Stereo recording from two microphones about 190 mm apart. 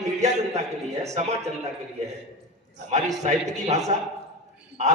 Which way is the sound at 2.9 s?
35° right (ahead or behind).